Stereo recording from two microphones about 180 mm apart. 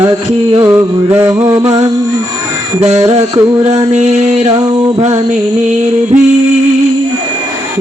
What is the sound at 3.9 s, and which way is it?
Music, 40° right (ahead or behind).